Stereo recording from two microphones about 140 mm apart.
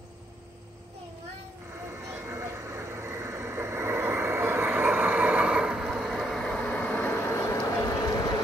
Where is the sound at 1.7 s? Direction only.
20° right (ahead or behind); by 7.5 s 15° left (ahead or behind).